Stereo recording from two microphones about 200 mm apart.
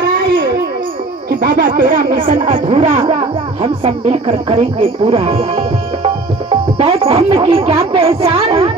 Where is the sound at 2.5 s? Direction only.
30° right (ahead or behind).